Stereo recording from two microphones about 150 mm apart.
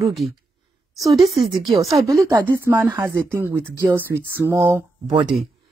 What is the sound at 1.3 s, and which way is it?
Speech, 40° right (ahead or behind).